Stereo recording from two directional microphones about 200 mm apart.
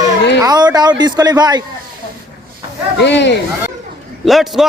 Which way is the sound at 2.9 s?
60° left (ahead or behind).